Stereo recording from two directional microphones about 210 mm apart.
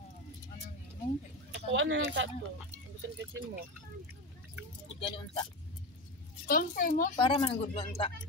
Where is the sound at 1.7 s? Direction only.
65° right (ahead or behind).